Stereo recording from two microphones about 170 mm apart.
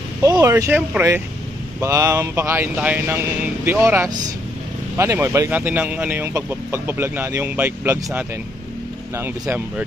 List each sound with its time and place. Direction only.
0.2 s speech: 15° right (ahead or behind)